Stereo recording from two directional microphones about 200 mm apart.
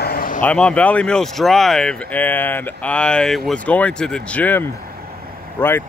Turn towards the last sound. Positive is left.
turn(degrees=10)  # may be behind; listen again after turning